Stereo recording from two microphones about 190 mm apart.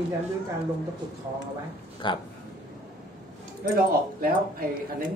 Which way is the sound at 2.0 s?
25° left (ahead or behind).